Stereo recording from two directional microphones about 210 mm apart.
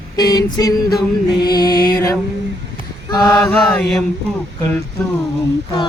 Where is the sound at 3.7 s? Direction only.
Centre (ahead or behind).